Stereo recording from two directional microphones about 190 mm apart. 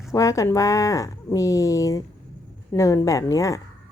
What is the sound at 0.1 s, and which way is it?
A woman's voice, 15° left (ahead or behind).